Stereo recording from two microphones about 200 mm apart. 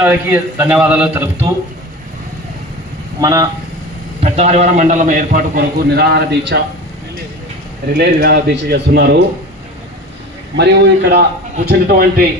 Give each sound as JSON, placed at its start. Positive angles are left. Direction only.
{"t": 0.0, "sound": "a man's voice", "side_deg": -10}
{"t": 3.2, "sound": "a man's voice", "side_deg": -15}
{"t": 4.2, "sound": "a man's voice", "side_deg": -35}
{"t": 7.9, "sound": "a man's voice", "side_deg": -55}
{"t": 10.6, "sound": "a man's voice", "side_deg": -60}